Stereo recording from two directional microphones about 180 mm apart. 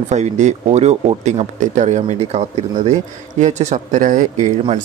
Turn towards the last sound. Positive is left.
turn(degrees=-40)  # may be behind; listen again after turning